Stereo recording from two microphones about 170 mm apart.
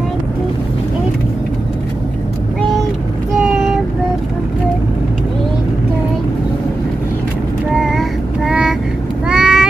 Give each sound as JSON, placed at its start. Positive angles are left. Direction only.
{"t": 7.7, "sound": "child singing", "side_deg": 0}
{"t": 9.3, "sound": "vehicle", "side_deg": -5}